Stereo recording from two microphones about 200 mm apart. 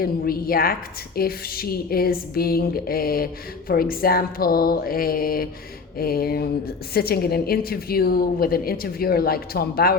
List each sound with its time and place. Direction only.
0.0 s a woman's voice: 45° left (ahead or behind)